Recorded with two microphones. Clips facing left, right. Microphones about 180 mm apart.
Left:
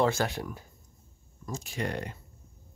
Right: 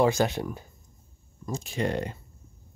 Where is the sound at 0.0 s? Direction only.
20° right (ahead or behind).